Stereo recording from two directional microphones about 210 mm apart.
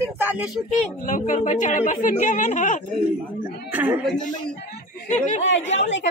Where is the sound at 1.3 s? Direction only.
35° left (ahead or behind).